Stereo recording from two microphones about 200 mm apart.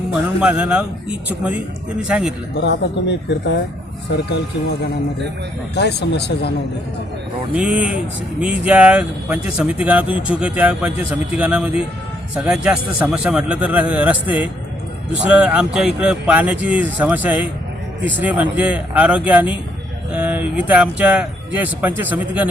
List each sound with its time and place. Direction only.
0.1 s speech: 5° right (ahead or behind)
2.6 s speech: 60° left (ahead or behind)
5.7 s speech: 55° left (ahead or behind)
7.5 s speech: 5° right (ahead or behind)